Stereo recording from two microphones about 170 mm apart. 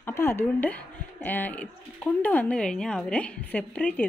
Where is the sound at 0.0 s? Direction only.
15° left (ahead or behind).